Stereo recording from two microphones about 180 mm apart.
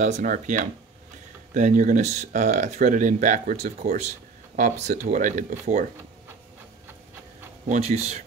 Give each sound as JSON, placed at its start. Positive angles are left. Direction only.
{"t": 0.0, "sound": "speech", "side_deg": -45}
{"t": 7.6, "sound": "speech", "side_deg": -40}